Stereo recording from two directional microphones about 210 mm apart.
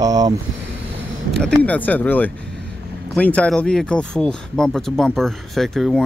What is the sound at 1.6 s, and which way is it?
Speech, 5° left (ahead or behind).